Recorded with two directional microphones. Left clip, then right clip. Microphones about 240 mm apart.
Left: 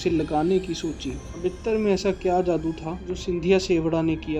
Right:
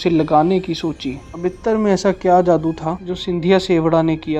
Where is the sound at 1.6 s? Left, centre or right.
Right.